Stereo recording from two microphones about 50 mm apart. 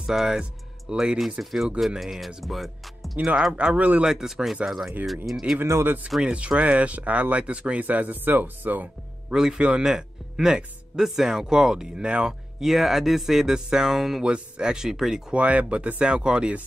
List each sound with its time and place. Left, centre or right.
0.1 s a man's voice: centre
0.4 s music: centre
1.4 s speech: centre
3.5 s speech: right
4.0 s a man's voice: centre
5.6 s speech: right
6.2 s speech: right
9.3 s a man's voice: centre
15.3 s speech: right